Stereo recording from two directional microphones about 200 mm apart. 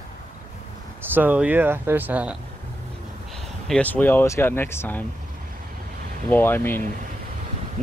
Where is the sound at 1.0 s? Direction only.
10° right (ahead or behind).